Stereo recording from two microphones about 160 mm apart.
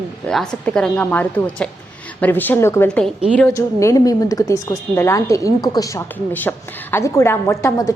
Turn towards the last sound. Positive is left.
turn(degrees=20)  # may be behind; listen again after turning